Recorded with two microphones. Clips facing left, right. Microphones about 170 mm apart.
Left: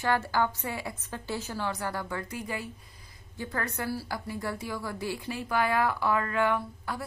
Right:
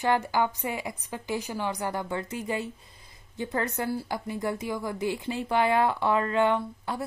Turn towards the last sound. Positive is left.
turn(degrees=-25)  # may be behind; listen again after turning